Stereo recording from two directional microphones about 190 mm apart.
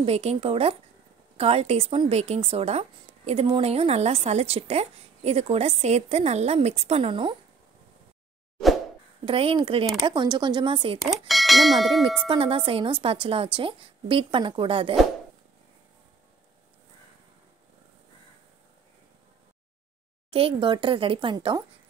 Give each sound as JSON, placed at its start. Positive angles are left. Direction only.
{"t": 0.0, "sound": "speech", "side_deg": -30}
{"t": 9.2, "sound": "a woman's voice", "side_deg": -30}
{"t": 11.0, "sound": "speech", "side_deg": 0}
{"t": 12.3, "sound": "a woman's voice", "side_deg": -30}
{"t": 20.2, "sound": "a woman's voice", "side_deg": -30}